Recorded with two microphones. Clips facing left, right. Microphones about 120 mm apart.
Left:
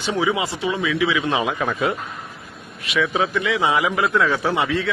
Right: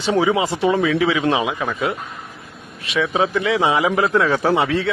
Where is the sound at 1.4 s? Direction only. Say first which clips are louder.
Even; centre (ahead or behind).